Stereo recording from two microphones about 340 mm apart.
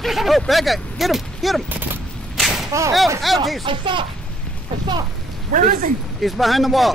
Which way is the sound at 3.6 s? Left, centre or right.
Centre.